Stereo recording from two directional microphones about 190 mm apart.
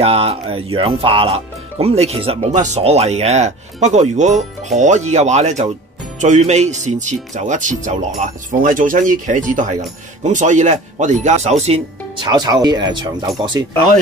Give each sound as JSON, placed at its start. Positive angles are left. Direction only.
{"t": 0.0, "sound": "speech", "side_deg": -30}
{"t": 12.3, "sound": "speech", "side_deg": -20}